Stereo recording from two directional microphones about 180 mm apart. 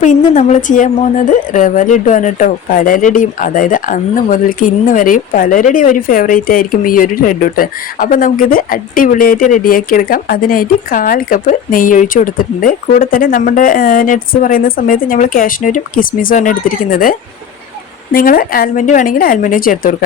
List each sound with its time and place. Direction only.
0.0 s a woman's voice: 45° left (ahead or behind)